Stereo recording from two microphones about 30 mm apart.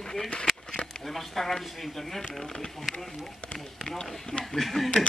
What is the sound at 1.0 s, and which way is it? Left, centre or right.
Speech, centre.